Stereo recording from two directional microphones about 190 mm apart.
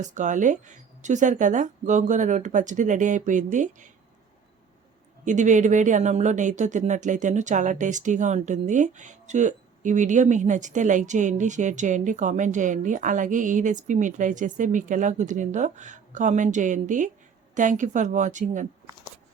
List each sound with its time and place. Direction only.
0.0 s speech: 40° right (ahead or behind)
5.2 s speech: 40° right (ahead or behind)